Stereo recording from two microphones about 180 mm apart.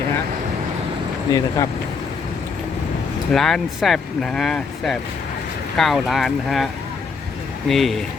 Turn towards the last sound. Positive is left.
turn(degrees=0)  # may be behind; listen again after turning